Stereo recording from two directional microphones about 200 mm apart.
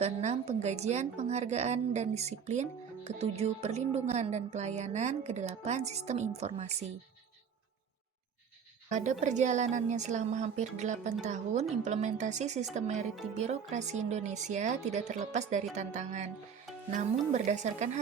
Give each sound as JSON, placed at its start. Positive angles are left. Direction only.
{"t": 0.0, "sound": "a woman's voice", "side_deg": -35}
{"t": 8.9, "sound": "a woman's voice", "side_deg": -35}